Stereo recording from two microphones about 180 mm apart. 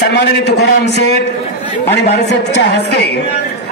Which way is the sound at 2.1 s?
70° left (ahead or behind).